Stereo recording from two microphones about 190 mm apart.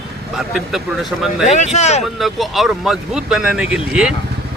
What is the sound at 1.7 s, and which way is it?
Speech, 35° left (ahead or behind).